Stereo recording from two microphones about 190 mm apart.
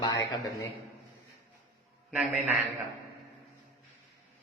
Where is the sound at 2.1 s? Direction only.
5° right (ahead or behind).